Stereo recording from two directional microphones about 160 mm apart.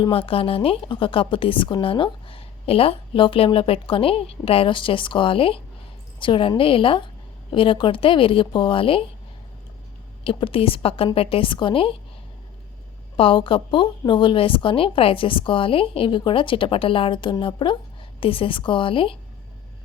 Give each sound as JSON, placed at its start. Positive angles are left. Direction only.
{"t": 0.0, "sound": "a woman's voice", "side_deg": 35}
{"t": 10.2, "sound": "a woman's voice", "side_deg": 35}
{"t": 13.1, "sound": "a woman's voice", "side_deg": 35}